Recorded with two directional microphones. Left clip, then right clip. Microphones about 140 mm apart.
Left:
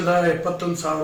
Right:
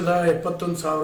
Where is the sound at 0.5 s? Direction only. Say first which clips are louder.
Left 1 dB; 40° right (ahead or behind).